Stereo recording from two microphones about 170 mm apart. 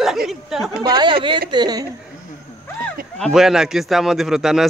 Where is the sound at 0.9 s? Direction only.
30° right (ahead or behind).